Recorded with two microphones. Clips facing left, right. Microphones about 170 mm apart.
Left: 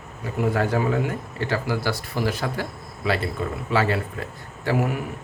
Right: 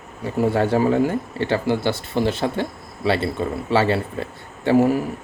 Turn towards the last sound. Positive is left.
turn(degrees=-30)  # may be behind; listen again after turning